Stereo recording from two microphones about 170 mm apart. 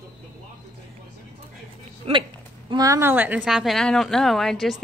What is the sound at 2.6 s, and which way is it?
Speech, 20° right (ahead or behind).